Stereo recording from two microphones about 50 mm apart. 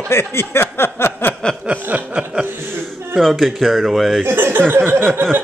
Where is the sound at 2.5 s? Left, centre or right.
Right.